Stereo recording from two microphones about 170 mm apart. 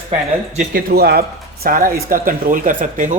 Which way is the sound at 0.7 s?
70° right (ahead or behind).